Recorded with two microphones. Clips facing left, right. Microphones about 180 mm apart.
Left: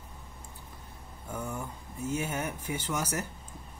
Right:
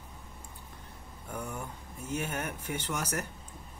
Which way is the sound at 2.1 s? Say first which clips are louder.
Left 1 dB; 10° left (ahead or behind).